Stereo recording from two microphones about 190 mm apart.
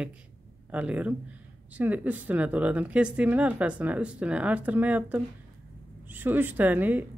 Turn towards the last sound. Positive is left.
turn(degrees=-10)  # may be behind; listen again after turning